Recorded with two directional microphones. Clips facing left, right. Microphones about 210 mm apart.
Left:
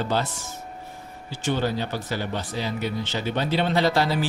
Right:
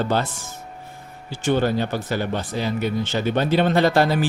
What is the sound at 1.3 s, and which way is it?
Speech, 55° right (ahead or behind).